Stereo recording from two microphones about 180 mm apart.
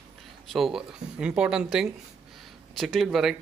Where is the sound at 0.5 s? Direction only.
Centre (ahead or behind).